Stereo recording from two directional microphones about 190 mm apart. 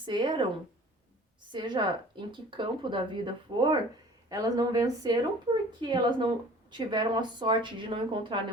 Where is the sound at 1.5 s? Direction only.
25° right (ahead or behind).